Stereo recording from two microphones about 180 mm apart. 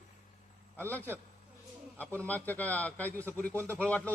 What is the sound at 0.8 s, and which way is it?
A man's voice, 10° left (ahead or behind).